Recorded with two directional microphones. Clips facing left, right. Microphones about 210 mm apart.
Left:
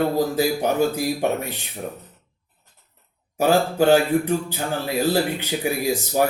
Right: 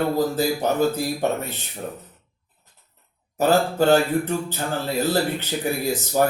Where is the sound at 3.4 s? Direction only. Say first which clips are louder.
Left 1 dB; 15° left (ahead or behind).